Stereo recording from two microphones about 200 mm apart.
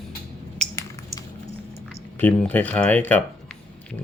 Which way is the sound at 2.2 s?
5° left (ahead or behind).